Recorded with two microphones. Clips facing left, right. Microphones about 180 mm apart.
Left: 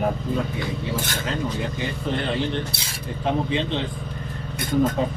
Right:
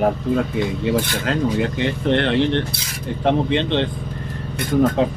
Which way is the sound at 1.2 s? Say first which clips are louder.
Right 7 dB; 70° right (ahead or behind).